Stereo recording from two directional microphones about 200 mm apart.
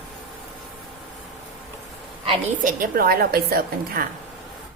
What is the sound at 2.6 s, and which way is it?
A woman's voice, 45° right (ahead or behind).